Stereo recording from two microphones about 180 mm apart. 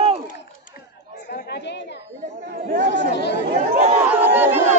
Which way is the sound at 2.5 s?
55° right (ahead or behind).